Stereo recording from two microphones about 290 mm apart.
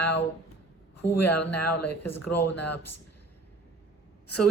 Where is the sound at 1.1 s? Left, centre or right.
Left.